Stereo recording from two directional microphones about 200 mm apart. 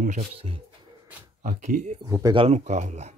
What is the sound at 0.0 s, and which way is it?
Speech, 35° right (ahead or behind).